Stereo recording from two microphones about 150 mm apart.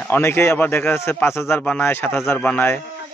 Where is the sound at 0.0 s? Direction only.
15° left (ahead or behind).